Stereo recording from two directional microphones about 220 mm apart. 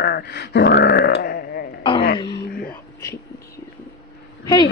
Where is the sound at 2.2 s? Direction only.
20° left (ahead or behind).